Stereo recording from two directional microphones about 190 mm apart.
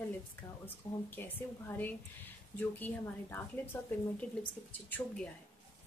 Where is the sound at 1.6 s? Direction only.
10° left (ahead or behind).